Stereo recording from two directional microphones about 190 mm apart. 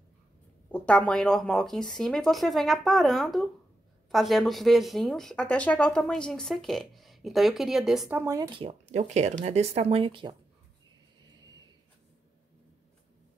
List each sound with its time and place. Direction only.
0.7 s speech: 5° left (ahead or behind); by 8.4 s 10° right (ahead or behind)
8.4 s speech: 25° right (ahead or behind)